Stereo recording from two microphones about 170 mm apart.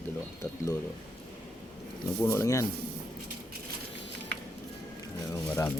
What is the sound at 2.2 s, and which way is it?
Speech, 15° left (ahead or behind).